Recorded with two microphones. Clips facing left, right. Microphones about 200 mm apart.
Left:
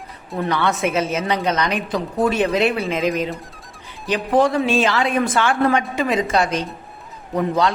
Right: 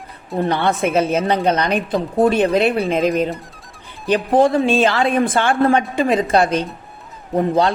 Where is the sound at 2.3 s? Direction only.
55° right (ahead or behind).